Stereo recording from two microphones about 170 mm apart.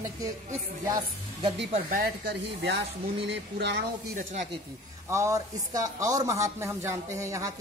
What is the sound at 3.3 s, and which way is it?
Speech, 80° right.